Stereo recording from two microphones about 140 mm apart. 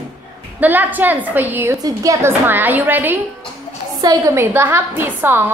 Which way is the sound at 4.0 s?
25° right (ahead or behind).